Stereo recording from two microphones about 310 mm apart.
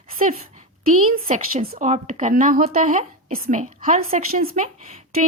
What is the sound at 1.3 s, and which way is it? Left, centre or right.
A woman's voice, right.